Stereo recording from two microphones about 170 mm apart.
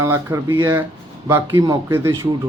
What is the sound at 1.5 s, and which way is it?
Speech, 25° right (ahead or behind).